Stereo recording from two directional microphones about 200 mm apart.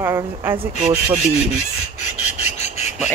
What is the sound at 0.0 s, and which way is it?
Speech, 10° right (ahead or behind).